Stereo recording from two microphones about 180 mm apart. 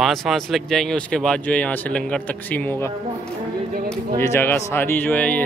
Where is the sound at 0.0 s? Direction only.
Centre (ahead or behind).